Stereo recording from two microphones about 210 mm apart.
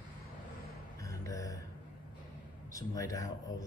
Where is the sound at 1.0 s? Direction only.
15° left (ahead or behind).